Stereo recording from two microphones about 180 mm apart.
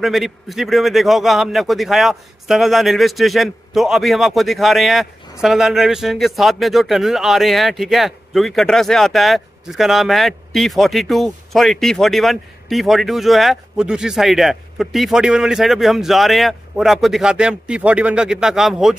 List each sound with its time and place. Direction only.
0.0 s a man's voice: centre (ahead or behind)